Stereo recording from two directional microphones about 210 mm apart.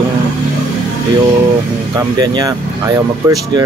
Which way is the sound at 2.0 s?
20° right (ahead or behind).